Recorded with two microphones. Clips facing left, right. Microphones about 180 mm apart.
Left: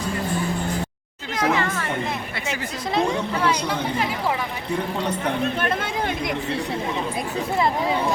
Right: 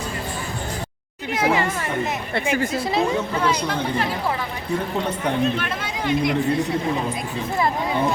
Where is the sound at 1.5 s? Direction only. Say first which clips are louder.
Right 2 dB; 15° right (ahead or behind).